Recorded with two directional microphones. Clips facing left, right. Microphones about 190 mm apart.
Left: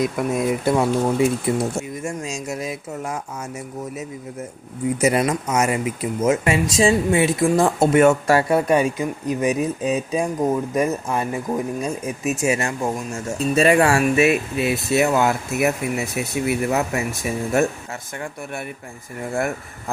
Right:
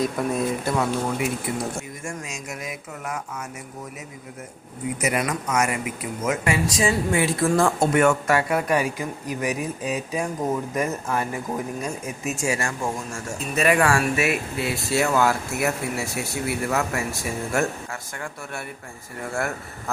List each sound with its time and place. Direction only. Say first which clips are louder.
0.0 s speech: left 2 dB; 10° left (ahead or behind)
0.6 s speech: left 5 dB; 25° left (ahead or behind)
4.9 s speech: left 6 dB; 30° left (ahead or behind)
19.2 s speech: left 4 dB; 20° left (ahead or behind)